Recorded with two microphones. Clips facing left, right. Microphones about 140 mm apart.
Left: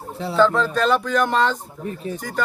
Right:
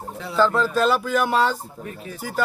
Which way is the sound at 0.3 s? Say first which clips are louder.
Left 1 dB; 5° right (ahead or behind).